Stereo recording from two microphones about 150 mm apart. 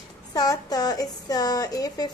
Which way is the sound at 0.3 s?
25° left (ahead or behind).